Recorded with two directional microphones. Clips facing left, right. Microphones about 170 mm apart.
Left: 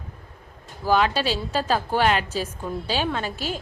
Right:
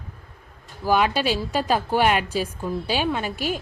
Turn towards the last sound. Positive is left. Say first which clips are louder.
# right 2 dB
turn(degrees=-15)  # may be behind; listen again after turning